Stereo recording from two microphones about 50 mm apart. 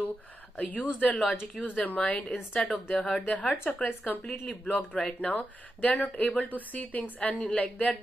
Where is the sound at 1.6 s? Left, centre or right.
Centre.